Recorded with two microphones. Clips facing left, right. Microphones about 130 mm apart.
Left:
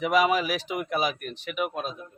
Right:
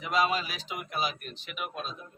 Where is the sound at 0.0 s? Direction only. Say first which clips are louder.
Left 6 dB; 85° left; by 2.0 s 55° left (ahead or behind).